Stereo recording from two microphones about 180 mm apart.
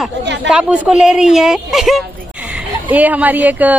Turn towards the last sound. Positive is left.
turn(degrees=-10)  # may be behind; listen again after turning